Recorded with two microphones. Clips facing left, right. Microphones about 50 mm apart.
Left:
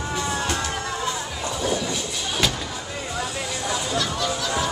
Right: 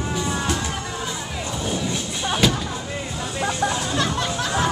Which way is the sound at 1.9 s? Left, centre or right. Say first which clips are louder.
Right 3 dB; centre.